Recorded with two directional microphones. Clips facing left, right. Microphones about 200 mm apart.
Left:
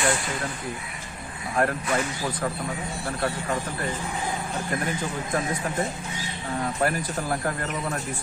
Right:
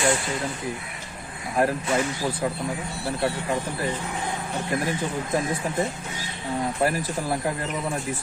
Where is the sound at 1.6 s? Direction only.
25° right (ahead or behind).